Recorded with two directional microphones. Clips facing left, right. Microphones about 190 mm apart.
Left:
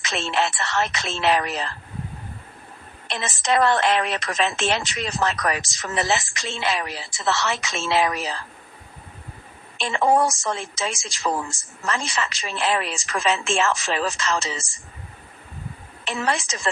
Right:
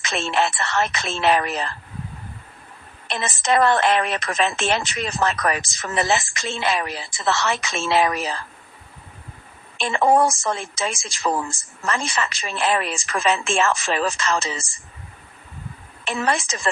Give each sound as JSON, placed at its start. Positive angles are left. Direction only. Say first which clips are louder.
{"t": 0.0, "sound": "a woman's voice", "louder": "right 2 dB", "side_deg": -55}
{"t": 3.1, "sound": "a woman's voice", "louder": "right 2 dB", "side_deg": -55}
{"t": 9.7, "sound": "a woman's voice", "louder": "right 2 dB", "side_deg": -55}
{"t": 16.0, "sound": "a woman's voice", "louder": "right 2 dB", "side_deg": -55}